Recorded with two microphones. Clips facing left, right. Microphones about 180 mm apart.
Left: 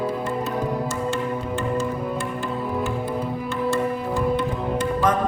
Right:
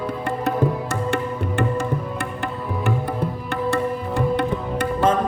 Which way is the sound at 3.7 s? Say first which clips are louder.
Right 1 dB; 65° right (ahead or behind).